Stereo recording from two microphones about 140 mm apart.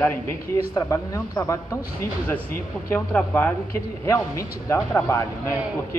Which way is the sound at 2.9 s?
15° left (ahead or behind).